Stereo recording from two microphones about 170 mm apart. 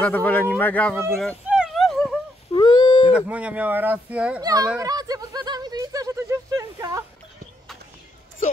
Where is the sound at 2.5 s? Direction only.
25° left (ahead or behind).